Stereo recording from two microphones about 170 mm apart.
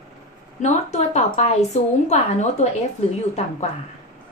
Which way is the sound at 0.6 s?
40° left (ahead or behind).